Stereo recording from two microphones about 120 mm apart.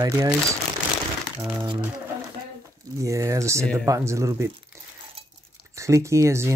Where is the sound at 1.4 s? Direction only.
25° right (ahead or behind).